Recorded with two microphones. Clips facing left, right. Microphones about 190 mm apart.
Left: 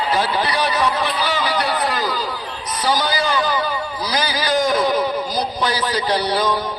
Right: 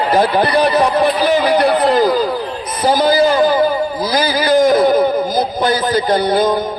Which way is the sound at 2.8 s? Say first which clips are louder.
Right 8 dB; 50° right (ahead or behind).